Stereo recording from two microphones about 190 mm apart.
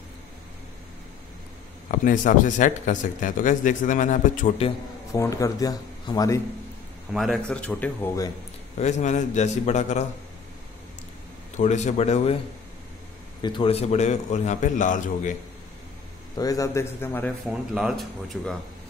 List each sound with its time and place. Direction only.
1.9 s speech: 40° left (ahead or behind)
5.1 s speech: 15° left (ahead or behind)
7.1 s speech: centre (ahead or behind)
8.7 s speech: 35° left (ahead or behind)
11.5 s speech: 40° left (ahead or behind)
13.4 s speech: 25° left (ahead or behind); by 15.3 s 40° left (ahead or behind)
16.3 s speech: 20° left (ahead or behind)
17.5 s speech: centre (ahead or behind)